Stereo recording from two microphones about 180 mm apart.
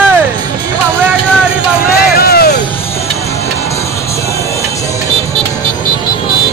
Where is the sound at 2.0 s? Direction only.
60° left (ahead or behind).